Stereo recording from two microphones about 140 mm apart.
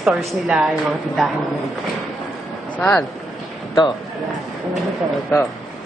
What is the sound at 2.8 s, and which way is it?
Speech, 10° left (ahead or behind).